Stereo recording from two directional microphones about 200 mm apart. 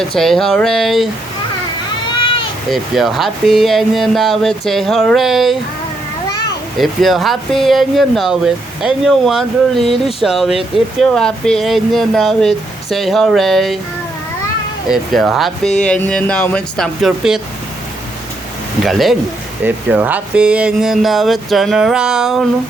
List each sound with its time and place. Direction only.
0.0 s speech: centre (ahead or behind)
2.2 s goat: 25° left (ahead or behind)
2.6 s speech: centre (ahead or behind)
6.7 s speech: centre (ahead or behind)
14.8 s speech: centre (ahead or behind)
18.9 s speech: centre (ahead or behind)